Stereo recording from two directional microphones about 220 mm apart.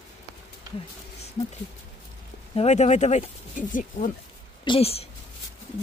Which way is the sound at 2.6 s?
30° left (ahead or behind).